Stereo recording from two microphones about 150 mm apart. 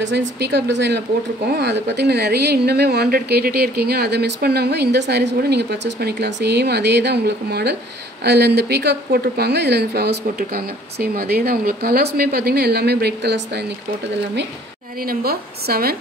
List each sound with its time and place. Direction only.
1.5 s speech: 90° right
15.0 s speech: 90° right